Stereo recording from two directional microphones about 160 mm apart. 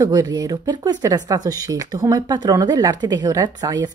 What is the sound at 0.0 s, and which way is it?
Speech, 25° right (ahead or behind).